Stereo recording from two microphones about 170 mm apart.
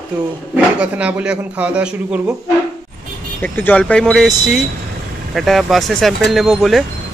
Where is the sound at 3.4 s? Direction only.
10° left (ahead or behind).